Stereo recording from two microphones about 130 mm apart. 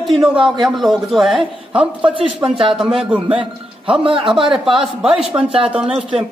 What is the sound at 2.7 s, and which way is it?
Speech, 5° right (ahead or behind).